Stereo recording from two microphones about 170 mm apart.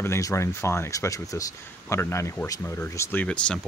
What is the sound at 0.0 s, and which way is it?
Speech, 15° left (ahead or behind).